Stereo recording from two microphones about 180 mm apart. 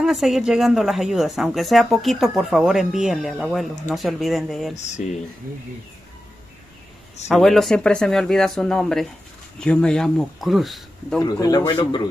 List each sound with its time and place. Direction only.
0.0 s speech: centre (ahead or behind)
4.7 s speech: 40° left (ahead or behind)
7.2 s speech: centre (ahead or behind)
11.1 s a man's voice: 20° left (ahead or behind)